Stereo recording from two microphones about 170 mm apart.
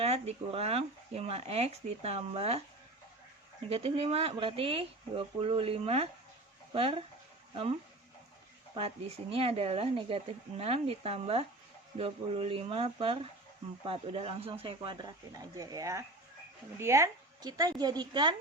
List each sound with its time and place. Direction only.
0.0 s speech: 35° right (ahead or behind)
3.7 s speech: 35° right (ahead or behind)